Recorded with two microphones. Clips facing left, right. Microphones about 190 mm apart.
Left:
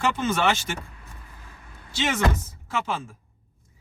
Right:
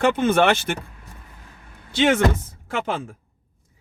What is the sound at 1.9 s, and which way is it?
Speech, 60° right (ahead or behind).